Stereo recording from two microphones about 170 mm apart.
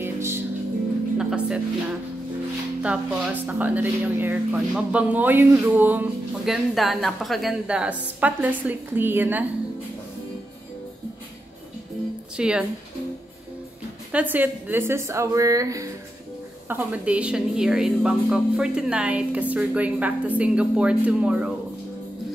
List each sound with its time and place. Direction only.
0.0 s music: 15° right (ahead or behind)
2.8 s a woman's voice: 5° right (ahead or behind)
12.4 s speech: 5° right (ahead or behind)
14.1 s a woman's voice: 10° right (ahead or behind)